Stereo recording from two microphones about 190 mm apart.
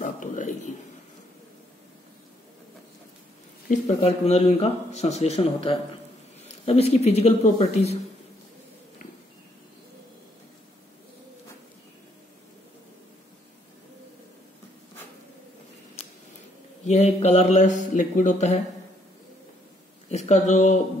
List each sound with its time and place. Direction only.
0.0 s a man's voice: 40° left (ahead or behind)
3.8 s speech: 35° left (ahead or behind)
16.0 s a sound: 35° left (ahead or behind)
16.8 s speech: 35° left (ahead or behind)
20.1 s speech: 35° left (ahead or behind)